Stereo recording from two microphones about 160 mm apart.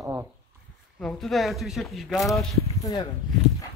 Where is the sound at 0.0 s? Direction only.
15° right (ahead or behind).